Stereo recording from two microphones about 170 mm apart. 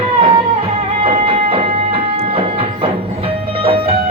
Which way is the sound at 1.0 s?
35° right (ahead or behind).